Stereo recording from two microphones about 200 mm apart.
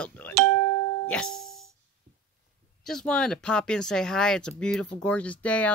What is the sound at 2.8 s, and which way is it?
Speech, 5° left (ahead or behind).